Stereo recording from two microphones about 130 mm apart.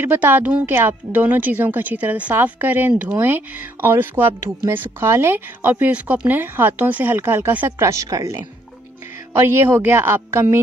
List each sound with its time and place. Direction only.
0.0 s a woman's voice: 15° right (ahead or behind)